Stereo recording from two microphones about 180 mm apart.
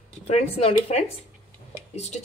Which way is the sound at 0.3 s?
35° left (ahead or behind).